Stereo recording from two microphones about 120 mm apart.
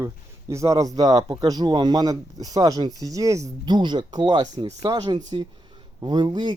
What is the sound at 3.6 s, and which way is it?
Speech, 40° right (ahead or behind).